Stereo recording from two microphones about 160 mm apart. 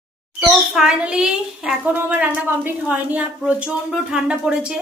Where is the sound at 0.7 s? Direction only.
5° right (ahead or behind).